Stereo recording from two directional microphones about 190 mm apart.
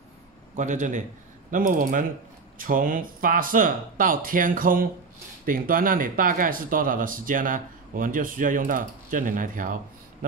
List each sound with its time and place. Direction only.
0.6 s a man's voice: 40° right (ahead or behind)